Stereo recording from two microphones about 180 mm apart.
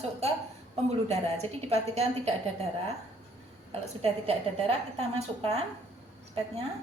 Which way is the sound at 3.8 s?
35° right (ahead or behind).